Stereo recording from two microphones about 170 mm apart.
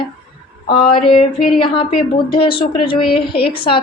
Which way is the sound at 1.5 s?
30° left (ahead or behind).